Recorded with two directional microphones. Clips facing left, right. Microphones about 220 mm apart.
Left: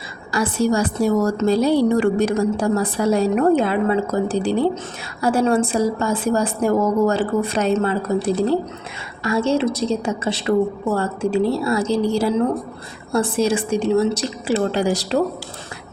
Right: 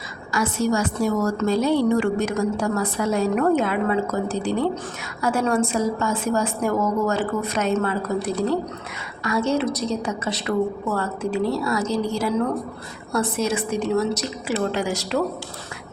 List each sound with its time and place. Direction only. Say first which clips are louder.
0.3 s a woman's voice: left 3 dB; 30° left (ahead or behind)